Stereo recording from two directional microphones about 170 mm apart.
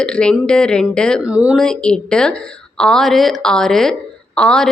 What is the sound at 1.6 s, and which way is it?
A woman's voice, 5° left (ahead or behind).